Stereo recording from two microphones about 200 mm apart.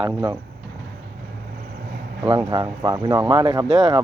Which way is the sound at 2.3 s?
20° right (ahead or behind).